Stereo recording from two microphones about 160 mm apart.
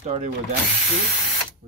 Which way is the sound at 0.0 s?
45° right (ahead or behind).